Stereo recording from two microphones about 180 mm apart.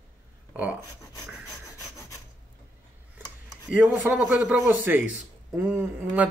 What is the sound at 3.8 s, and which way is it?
Speech, 10° right (ahead or behind).